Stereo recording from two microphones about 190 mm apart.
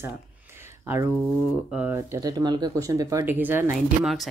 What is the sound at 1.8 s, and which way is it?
Speech, 10° right (ahead or behind).